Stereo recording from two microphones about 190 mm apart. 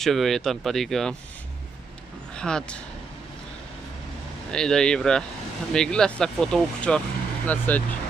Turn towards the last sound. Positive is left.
turn(degrees=10)  # may be behind; listen again after turning